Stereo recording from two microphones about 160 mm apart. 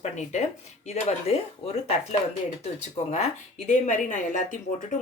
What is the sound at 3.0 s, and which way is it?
Speech, 45° left (ahead or behind).